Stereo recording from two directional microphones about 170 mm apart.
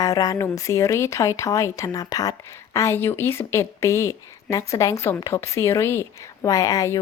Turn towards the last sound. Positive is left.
turn(degrees=20)  # may be behind; listen again after turning